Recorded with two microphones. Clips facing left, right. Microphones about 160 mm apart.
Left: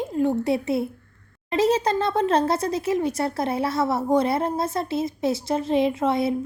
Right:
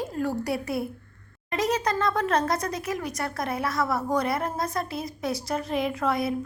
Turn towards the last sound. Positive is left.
turn(degrees=25)  # may be behind; listen again after turning